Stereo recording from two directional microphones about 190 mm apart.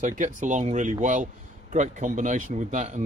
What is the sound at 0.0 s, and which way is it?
Speech, 40° right (ahead or behind).